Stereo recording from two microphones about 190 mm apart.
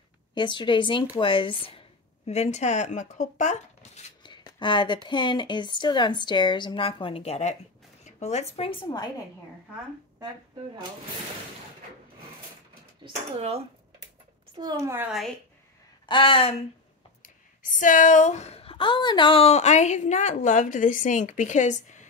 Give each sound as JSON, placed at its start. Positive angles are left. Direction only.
{"t": 0.3, "sound": "speech", "side_deg": 25}
{"t": 4.2, "sound": "speech", "side_deg": 25}
{"t": 13.0, "sound": "speech", "side_deg": -30}
{"t": 14.6, "sound": "a woman's voice", "side_deg": -20}
{"t": 16.1, "sound": "speech", "side_deg": 25}
{"t": 17.2, "sound": "speech", "side_deg": 45}